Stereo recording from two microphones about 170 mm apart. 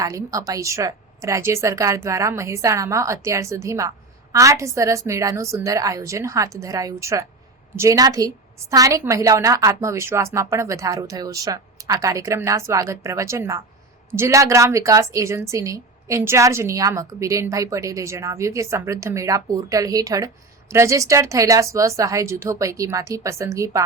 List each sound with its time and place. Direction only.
0.0 s a woman's voice: 20° right (ahead or behind)